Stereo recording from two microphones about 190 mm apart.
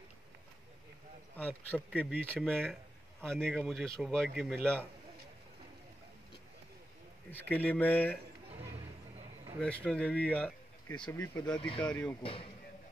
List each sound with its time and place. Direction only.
1.3 s speech: 10° left (ahead or behind)
7.2 s speech: 10° left (ahead or behind)
9.8 s speech: 5° left (ahead or behind); by 11.8 s 25° left (ahead or behind)
11.8 s speech: 5° left (ahead or behind)
12.2 s speech: 30° left (ahead or behind)